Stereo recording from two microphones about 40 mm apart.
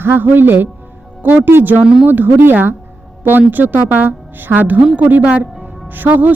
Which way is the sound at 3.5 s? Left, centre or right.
Right.